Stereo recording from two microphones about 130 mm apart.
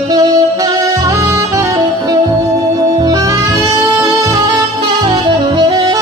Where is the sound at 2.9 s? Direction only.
30° right (ahead or behind).